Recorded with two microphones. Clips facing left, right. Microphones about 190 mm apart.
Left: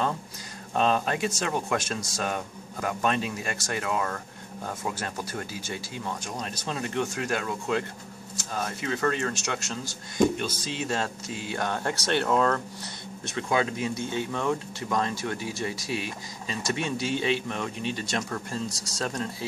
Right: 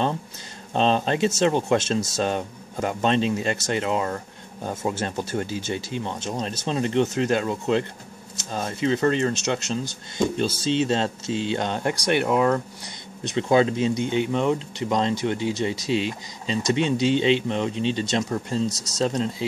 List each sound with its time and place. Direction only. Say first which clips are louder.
0.7 s speech: right 4 dB; 25° right (ahead or behind)
13.5 s speech: right 7 dB; 30° right (ahead or behind)